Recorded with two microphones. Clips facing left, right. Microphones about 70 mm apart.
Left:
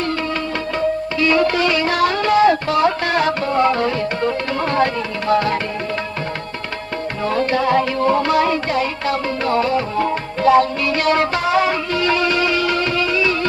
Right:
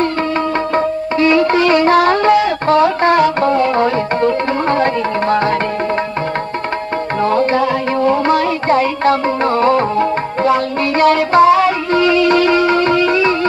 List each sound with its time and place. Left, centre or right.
0.7 s music: right
8.3 s music: right
11.3 s music: right